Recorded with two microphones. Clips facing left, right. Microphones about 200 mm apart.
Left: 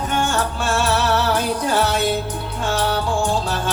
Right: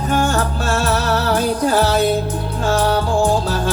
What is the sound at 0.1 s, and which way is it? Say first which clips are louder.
Music: right 5 dB; 35° right (ahead or behind).